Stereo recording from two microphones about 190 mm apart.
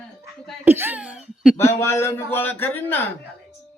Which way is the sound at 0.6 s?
10° right (ahead or behind).